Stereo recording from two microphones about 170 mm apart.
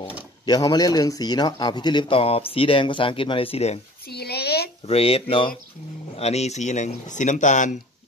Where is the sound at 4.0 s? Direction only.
70° left (ahead or behind).